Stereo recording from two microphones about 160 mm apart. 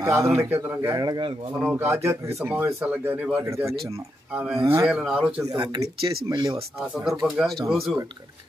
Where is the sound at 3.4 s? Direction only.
20° right (ahead or behind).